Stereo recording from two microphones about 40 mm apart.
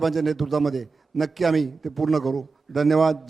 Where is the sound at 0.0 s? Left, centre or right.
Centre.